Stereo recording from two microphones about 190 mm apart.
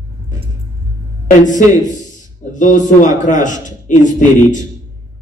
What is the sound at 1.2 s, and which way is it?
A woman's voice, 40° left (ahead or behind).